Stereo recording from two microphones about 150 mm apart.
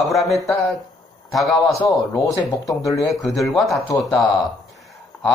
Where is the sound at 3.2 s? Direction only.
Centre (ahead or behind).